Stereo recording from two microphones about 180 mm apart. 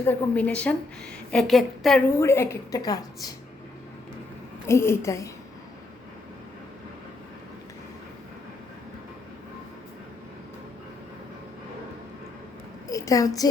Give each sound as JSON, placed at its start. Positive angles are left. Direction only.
{"t": 0.0, "sound": "a woman's voice", "side_deg": 10}
{"t": 2.1, "sound": "a woman's voice", "side_deg": 15}
{"t": 4.6, "sound": "a woman's voice", "side_deg": 15}
{"t": 12.9, "sound": "a woman's voice", "side_deg": 20}